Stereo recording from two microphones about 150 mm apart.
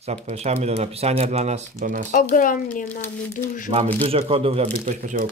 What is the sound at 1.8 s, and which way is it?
Speech, 55° right (ahead or behind).